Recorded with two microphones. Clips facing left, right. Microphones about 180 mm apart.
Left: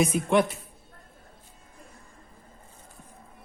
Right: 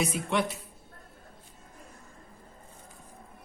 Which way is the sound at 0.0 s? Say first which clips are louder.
Left 6 dB; 50° left (ahead or behind).